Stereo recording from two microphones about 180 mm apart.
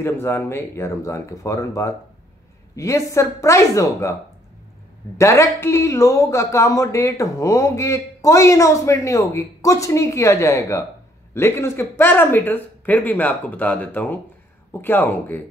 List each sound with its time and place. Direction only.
0.0 s speech: 15° left (ahead or behind)
5.1 s speech: 15° left (ahead or behind)